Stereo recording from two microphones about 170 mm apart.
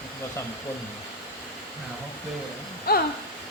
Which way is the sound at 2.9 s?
65° left (ahead or behind).